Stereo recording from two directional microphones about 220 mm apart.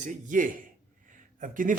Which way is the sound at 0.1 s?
35° right (ahead or behind).